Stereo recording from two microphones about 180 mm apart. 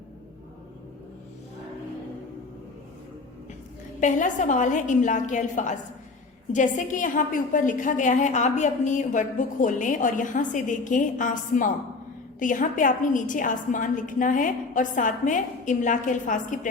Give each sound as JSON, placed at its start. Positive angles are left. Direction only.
{"t": 4.0, "sound": "a woman's voice", "side_deg": 45}